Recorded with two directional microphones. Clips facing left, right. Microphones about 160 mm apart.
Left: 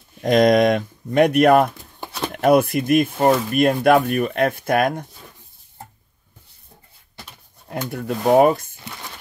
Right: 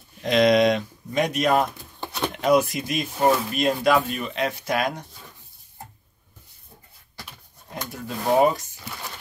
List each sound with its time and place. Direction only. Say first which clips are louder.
0.2 s speech: left 3 dB; 45° left (ahead or behind)
7.7 s speech: left 7 dB; 60° left (ahead or behind)